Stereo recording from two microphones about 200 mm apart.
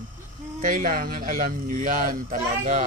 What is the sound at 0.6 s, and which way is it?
Speech, 40° right (ahead or behind).